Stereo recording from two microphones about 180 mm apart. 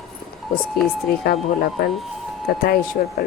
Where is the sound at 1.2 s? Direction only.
60° left (ahead or behind).